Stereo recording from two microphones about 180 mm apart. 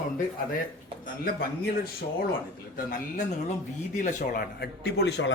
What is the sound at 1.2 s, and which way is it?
Speech, 55° left (ahead or behind).